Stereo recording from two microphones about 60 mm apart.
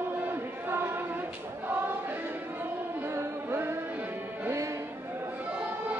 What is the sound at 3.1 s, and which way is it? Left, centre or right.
Music, right.